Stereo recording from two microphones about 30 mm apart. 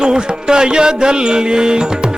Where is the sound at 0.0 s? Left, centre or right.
Right.